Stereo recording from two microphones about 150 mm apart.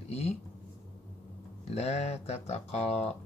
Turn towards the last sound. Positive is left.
turn(degrees=45)  # may be behind; listen again after turning